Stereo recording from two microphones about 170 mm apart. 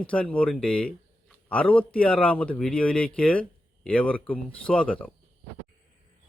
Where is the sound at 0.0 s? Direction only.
5° left (ahead or behind).